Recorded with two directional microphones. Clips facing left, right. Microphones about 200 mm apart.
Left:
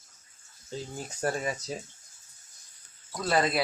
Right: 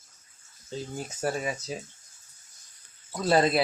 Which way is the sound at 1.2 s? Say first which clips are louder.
Even; 5° right (ahead or behind).